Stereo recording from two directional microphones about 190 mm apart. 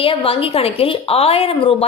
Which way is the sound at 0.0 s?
30° left (ahead or behind).